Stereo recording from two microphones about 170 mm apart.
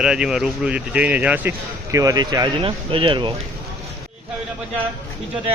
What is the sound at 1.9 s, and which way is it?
Speech, 20° right (ahead or behind).